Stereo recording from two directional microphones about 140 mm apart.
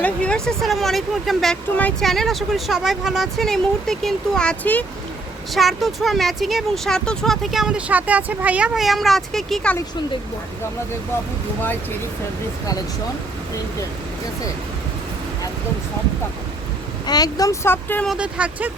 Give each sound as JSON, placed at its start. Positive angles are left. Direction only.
{"t": 0.0, "sound": "speech", "side_deg": 5}
{"t": 5.5, "sound": "speech", "side_deg": 0}
{"t": 17.1, "sound": "speech", "side_deg": 25}
{"t": 18.0, "sound": "speech", "side_deg": -5}